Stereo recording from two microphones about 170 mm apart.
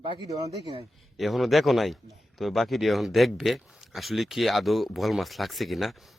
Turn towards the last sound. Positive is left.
turn(degrees=0)  # may be behind; listen again after turning